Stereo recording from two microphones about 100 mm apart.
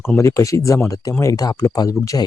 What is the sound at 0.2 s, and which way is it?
Speech, 30° left (ahead or behind).